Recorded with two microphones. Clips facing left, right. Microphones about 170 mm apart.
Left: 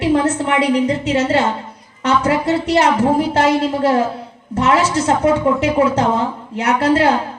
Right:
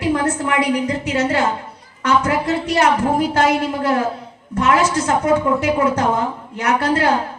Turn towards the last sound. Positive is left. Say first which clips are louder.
# left 3 dB
turn(degrees=30)  # may be behind; listen again after turning